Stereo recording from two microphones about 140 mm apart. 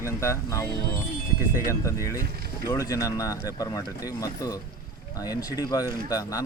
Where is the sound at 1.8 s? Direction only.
20° left (ahead or behind).